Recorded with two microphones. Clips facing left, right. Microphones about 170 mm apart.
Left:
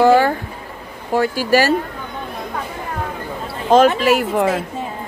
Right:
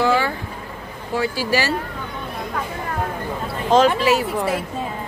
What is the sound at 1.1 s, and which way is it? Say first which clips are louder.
Speech: left 6 dB; 50° left (ahead or behind).